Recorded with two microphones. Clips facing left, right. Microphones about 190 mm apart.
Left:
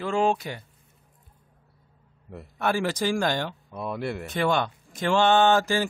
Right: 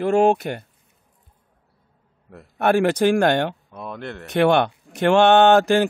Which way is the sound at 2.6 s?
60° right (ahead or behind).